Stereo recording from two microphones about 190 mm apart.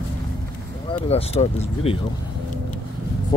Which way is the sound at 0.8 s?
30° left (ahead or behind).